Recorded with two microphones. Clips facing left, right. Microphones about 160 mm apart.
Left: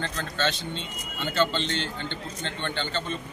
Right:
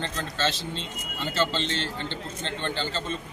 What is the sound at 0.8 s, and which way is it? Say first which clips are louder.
Speech: even; centre (ahead or behind).